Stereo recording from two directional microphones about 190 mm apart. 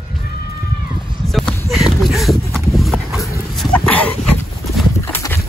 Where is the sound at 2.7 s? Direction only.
Centre (ahead or behind).